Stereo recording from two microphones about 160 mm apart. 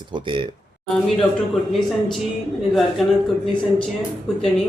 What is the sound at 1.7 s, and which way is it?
Speech, centre (ahead or behind).